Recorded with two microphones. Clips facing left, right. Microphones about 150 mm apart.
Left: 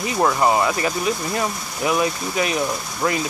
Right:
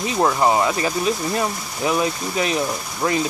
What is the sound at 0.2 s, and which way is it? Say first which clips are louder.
Speech: even; 15° right (ahead or behind).